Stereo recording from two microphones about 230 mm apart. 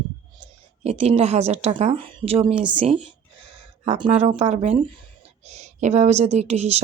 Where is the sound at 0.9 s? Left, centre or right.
Right.